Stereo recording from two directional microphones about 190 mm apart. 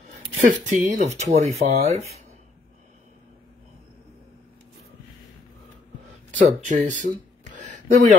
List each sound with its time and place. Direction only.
0.5 s speech: 40° right (ahead or behind)
6.3 s speech: 40° right (ahead or behind)